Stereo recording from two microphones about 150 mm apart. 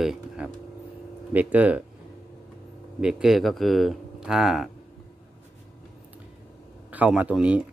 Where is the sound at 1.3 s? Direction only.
10° right (ahead or behind).